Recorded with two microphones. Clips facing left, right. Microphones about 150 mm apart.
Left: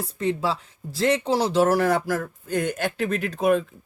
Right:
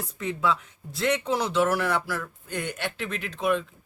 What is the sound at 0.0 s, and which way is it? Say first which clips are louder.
Speech: left 3 dB; 30° left (ahead or behind).